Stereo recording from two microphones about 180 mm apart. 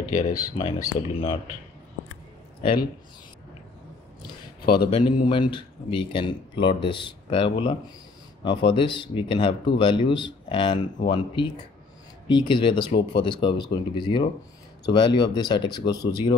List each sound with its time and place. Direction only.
0.0 s speech: 20° left (ahead or behind)
4.7 s speech: 30° left (ahead or behind)